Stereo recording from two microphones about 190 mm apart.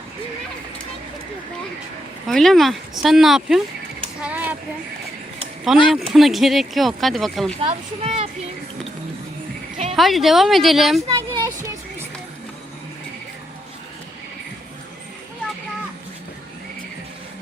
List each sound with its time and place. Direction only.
2.2 s speech: centre (ahead or behind)
4.2 s a sound: 5° right (ahead or behind)
5.7 s speech: centre (ahead or behind)
7.6 s a child's voice: 30° right (ahead or behind)
9.9 s speech: centre (ahead or behind)
11.1 s music: 15° right (ahead or behind)